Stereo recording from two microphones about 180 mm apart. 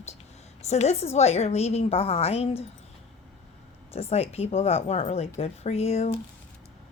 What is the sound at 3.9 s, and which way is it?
A woman's voice, 35° left (ahead or behind).